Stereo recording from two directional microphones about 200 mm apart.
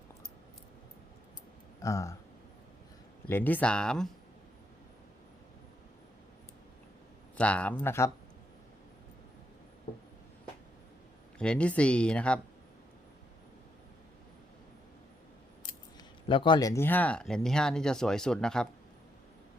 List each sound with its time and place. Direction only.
1.8 s speech: 15° left (ahead or behind)
3.2 s speech: 10° left (ahead or behind)
7.3 s speech: 5° left (ahead or behind)
11.3 s speech: 5° left (ahead or behind)
16.3 s speech: 25° left (ahead or behind); by 18.7 s 5° left (ahead or behind)